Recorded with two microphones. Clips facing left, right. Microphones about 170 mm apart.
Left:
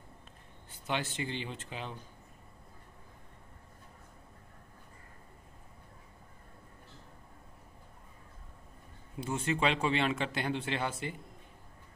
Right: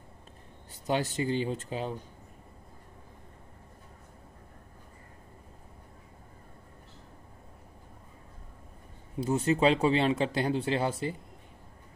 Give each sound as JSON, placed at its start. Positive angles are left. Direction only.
{"t": 0.7, "sound": "speech", "side_deg": -40}
{"t": 9.2, "sound": "speech", "side_deg": -35}